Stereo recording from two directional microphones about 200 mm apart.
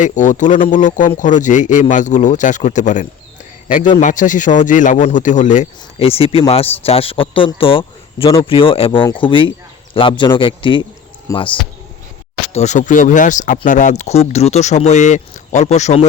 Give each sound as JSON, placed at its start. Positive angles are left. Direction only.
{"t": 0.0, "sound": "speech", "side_deg": 40}
{"t": 12.5, "sound": "speech", "side_deg": 35}